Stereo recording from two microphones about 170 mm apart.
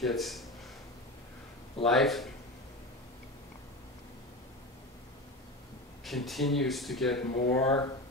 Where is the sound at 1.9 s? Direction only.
Centre (ahead or behind).